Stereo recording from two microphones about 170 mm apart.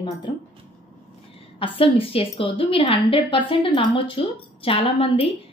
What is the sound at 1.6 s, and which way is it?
A woman's voice, 30° left (ahead or behind).